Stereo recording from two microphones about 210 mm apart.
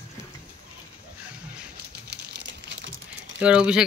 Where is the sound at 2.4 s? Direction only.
60° right (ahead or behind).